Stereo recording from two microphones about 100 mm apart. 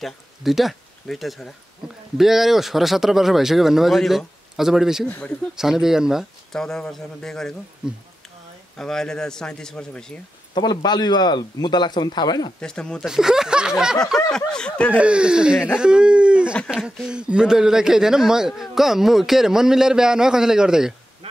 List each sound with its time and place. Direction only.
0.0 s speech: centre (ahead or behind)
6.5 s speech: 5° left (ahead or behind)
7.8 s speech: 10° right (ahead or behind)
8.7 s a man's voice: 5° left (ahead or behind)
10.5 s a man's voice: 45° left (ahead or behind)
12.5 s a man's voice: 10° left (ahead or behind)
13.0 s speech: 5° right (ahead or behind)
13.9 s a man's voice: 5° left (ahead or behind)
15.0 s speech: 10° right (ahead or behind)
15.8 s a sound: 10° right (ahead or behind)
16.7 s speech: 5° right (ahead or behind)